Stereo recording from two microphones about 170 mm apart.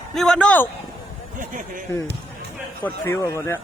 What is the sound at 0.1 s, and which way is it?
Speech, 5° left (ahead or behind).